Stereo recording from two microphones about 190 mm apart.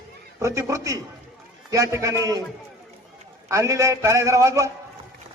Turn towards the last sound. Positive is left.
turn(degrees=-15)  # may be behind; listen again after turning